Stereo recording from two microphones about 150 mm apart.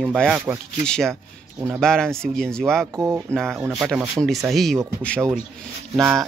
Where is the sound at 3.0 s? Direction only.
20° right (ahead or behind).